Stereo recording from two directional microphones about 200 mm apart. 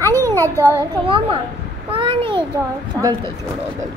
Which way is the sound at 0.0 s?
10° left (ahead or behind).